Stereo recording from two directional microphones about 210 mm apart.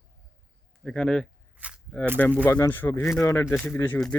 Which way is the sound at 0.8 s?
5° left (ahead or behind).